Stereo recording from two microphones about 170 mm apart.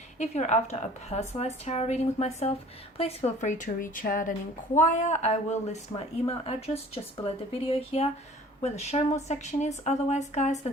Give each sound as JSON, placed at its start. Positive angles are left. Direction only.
{"t": 0.2, "sound": "a woman's voice", "side_deg": 45}